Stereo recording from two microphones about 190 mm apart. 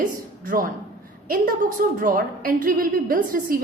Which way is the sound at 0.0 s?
45° right (ahead or behind).